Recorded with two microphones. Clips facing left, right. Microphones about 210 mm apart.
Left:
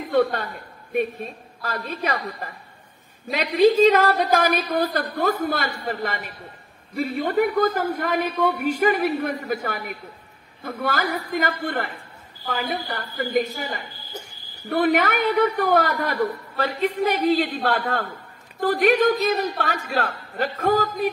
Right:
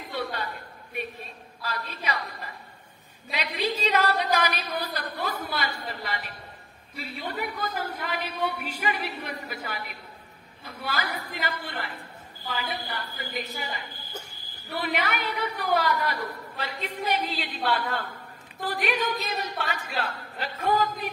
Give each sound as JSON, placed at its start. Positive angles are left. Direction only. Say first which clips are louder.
{"t": 0.1, "sound": "a man's voice", "louder": "left 12 dB", "side_deg": 55}